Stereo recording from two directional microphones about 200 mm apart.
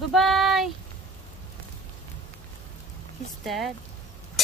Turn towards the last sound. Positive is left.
turn(degrees=0)  # may be behind; listen again after turning